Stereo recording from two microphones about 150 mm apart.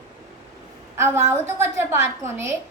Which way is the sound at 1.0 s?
15° right (ahead or behind).